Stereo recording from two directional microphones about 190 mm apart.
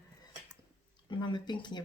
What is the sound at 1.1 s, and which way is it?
Speech, 25° left (ahead or behind).